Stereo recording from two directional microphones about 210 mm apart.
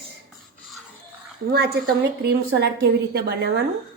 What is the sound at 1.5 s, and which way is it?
A woman's voice, 50° right (ahead or behind).